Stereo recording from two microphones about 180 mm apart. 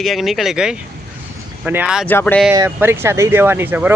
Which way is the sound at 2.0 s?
10° left (ahead or behind).